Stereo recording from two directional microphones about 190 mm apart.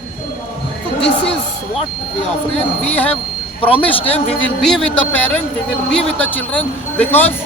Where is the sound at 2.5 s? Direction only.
35° left (ahead or behind).